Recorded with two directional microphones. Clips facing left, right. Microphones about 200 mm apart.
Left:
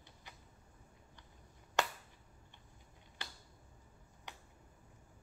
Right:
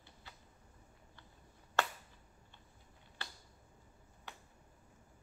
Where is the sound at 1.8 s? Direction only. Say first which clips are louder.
Even; 15° left (ahead or behind).